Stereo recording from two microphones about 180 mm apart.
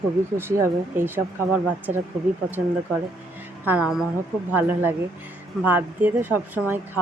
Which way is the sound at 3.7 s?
5° right (ahead or behind).